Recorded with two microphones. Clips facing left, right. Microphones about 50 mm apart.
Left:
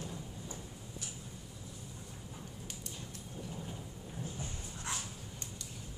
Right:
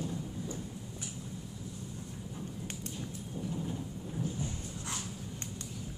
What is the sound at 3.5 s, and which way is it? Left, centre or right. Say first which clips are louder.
Thunder: right 8 dB; centre.